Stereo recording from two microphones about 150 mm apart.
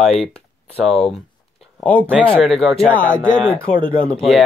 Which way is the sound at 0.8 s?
Centre (ahead or behind).